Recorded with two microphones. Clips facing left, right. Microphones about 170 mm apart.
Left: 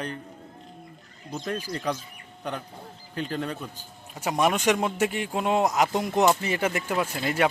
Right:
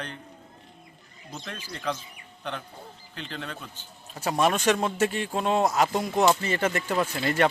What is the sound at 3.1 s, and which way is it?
Speech, 45° left (ahead or behind).